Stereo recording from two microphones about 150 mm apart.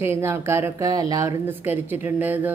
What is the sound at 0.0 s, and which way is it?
A woman's voice, 15° right (ahead or behind).